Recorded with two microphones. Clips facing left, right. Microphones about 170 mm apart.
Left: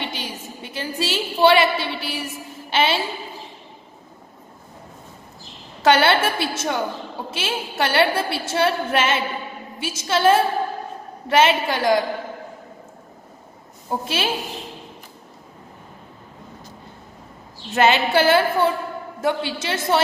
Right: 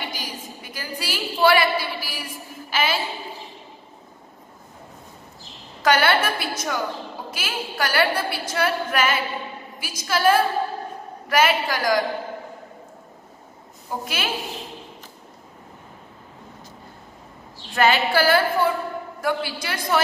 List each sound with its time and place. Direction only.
0.0 s a sound: 25° left (ahead or behind)
5.8 s a woman's voice: 25° left (ahead or behind)
13.8 s a woman's voice: 25° left (ahead or behind)
17.6 s a woman's voice: 20° left (ahead or behind)